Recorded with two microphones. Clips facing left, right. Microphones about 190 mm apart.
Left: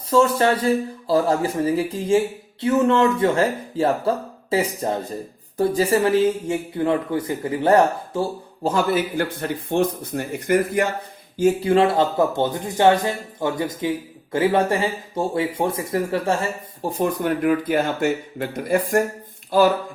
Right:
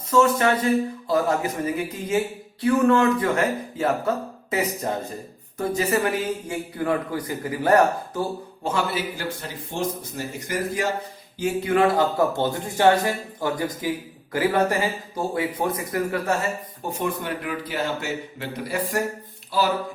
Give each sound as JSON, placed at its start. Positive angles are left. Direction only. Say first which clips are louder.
{"t": 0.1, "sound": "a man's voice", "louder": "left 2 dB", "side_deg": 30}
{"t": 8.6, "sound": "speech", "louder": "left 5 dB", "side_deg": 45}
{"t": 11.3, "sound": "speech", "louder": "left 7 dB", "side_deg": 40}
{"t": 11.7, "sound": "a man's voice", "louder": "left 2 dB", "side_deg": 25}
{"t": 19.5, "sound": "a sound", "louder": "left 7 dB", "side_deg": 50}